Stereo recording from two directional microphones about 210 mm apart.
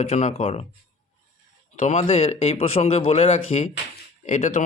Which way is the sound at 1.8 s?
35° left (ahead or behind).